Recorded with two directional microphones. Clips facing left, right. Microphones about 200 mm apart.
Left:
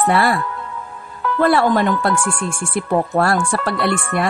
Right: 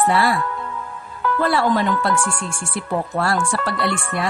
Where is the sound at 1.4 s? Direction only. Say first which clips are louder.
Left 4 dB; 50° left (ahead or behind).